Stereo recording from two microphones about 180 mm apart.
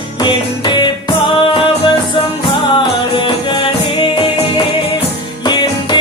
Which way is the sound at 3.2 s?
25° left (ahead or behind).